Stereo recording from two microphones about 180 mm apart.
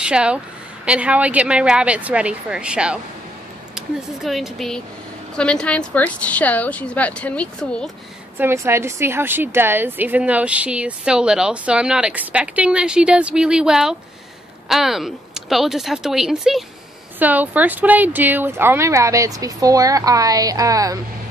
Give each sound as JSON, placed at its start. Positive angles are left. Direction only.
{"t": 0.0, "sound": "a woman's voice", "side_deg": -5}
{"t": 8.4, "sound": "a woman's voice", "side_deg": -15}